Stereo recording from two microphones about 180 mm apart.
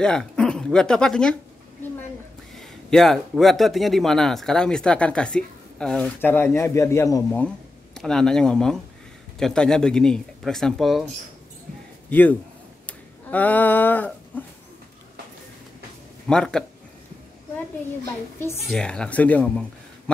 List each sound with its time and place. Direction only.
0.0 s speech: 5° left (ahead or behind)
2.5 s a man's voice: centre (ahead or behind)
12.1 s speech: 10° left (ahead or behind)
12.8 s a sound: 10° left (ahead or behind)
16.3 s a man's voice: 5° left (ahead or behind)
18.7 s speech: 5° left (ahead or behind)